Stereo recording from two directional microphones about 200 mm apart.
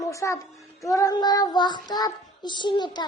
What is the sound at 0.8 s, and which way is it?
Child singing, 15° left (ahead or behind).